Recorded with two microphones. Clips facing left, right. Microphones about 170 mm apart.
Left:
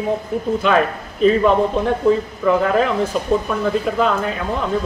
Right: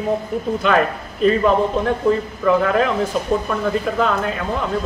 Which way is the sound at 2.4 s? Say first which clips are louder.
Even; centre (ahead or behind).